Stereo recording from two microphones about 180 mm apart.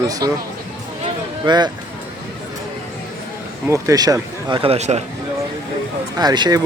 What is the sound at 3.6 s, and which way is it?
Speech, 15° right (ahead or behind).